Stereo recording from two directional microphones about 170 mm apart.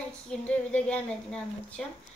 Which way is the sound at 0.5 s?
5° left (ahead or behind).